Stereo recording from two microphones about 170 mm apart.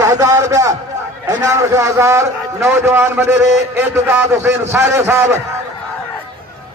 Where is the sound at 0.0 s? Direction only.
20° right (ahead or behind).